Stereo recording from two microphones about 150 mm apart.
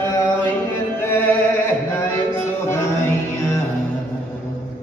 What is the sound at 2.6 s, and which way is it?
Music, 15° left (ahead or behind).